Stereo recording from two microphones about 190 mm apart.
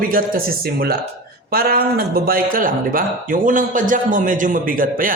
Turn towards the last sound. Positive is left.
turn(degrees=-45)  # may be behind; listen again after turning